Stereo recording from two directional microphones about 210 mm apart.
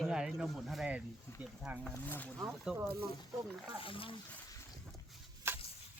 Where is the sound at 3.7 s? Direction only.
25° left (ahead or behind).